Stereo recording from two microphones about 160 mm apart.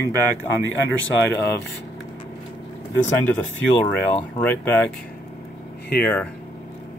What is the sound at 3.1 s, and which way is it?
Speech, 15° left (ahead or behind).